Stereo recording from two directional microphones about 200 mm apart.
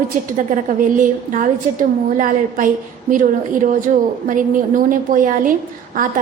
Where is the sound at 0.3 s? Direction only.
40° right (ahead or behind).